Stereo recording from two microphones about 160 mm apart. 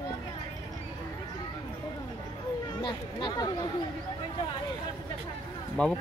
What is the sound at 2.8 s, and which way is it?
Chatter, 25° left (ahead or behind).